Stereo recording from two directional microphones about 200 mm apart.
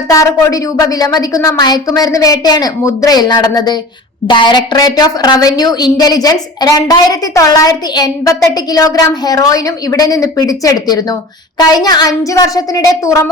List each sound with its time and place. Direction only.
0.1 s a woman's voice: 15° left (ahead or behind)